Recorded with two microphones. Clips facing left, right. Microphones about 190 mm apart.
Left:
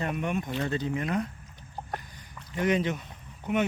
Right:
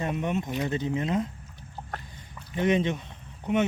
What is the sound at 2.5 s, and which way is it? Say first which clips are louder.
Speech: right 2 dB; 25° right (ahead or behind).